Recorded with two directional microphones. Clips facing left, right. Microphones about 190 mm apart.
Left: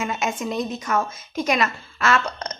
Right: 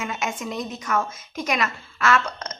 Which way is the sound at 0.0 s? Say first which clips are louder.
Left 3 dB; 25° left (ahead or behind).